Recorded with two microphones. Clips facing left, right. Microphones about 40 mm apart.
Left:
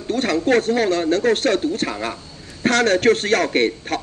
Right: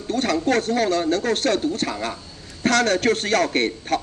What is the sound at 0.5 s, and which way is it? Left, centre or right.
A man's voice, left.